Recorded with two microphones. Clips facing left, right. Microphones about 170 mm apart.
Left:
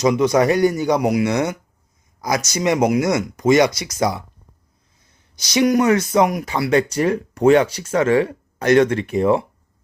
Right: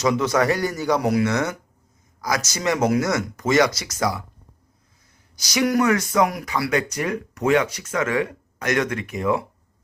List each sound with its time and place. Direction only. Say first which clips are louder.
0.0 s speech: left 4 dB; 15° left (ahead or behind)
5.4 s speech: left 4 dB; 25° left (ahead or behind)